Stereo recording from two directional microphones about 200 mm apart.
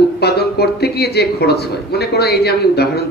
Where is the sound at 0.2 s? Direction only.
55° left (ahead or behind).